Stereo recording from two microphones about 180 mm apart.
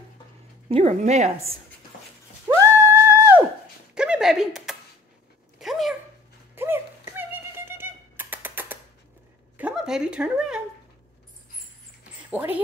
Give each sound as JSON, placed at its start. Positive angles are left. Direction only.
{"t": 0.7, "sound": "a woman's voice", "side_deg": -35}
{"t": 2.4, "sound": "music", "side_deg": -10}
{"t": 3.9, "sound": "a sound", "side_deg": -5}
{"t": 6.5, "sound": "a sound", "side_deg": -10}
{"t": 9.6, "sound": "speech", "side_deg": -5}
{"t": 12.3, "sound": "speech", "side_deg": -10}